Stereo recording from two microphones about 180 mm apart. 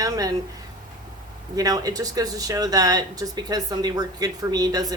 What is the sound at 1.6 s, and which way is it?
Speech, 20° right (ahead or behind).